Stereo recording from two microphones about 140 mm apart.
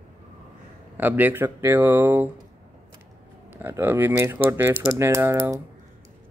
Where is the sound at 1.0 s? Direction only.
10° right (ahead or behind).